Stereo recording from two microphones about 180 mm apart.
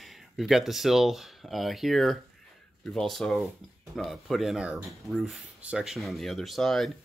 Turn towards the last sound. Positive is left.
turn(degrees=0)  # may be behind; listen again after turning